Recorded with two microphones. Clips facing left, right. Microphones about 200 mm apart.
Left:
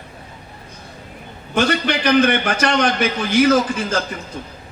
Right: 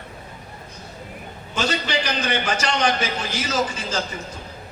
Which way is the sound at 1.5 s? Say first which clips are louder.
Left 6 dB; 60° left (ahead or behind).